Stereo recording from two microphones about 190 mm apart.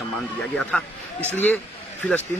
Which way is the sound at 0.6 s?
5° left (ahead or behind).